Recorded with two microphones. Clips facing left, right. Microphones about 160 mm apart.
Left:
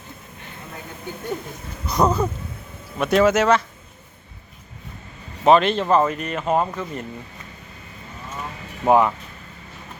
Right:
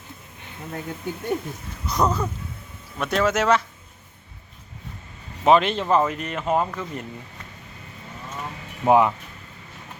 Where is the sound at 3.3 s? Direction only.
5° right (ahead or behind).